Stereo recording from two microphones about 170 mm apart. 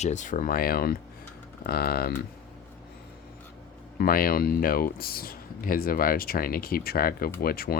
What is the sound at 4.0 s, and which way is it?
Speech, 60° left (ahead or behind).